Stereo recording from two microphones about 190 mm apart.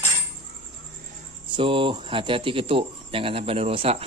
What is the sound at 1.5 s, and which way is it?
Cricket, 25° right (ahead or behind).